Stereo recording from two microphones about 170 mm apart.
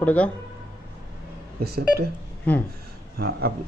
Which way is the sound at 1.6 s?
65° right (ahead or behind).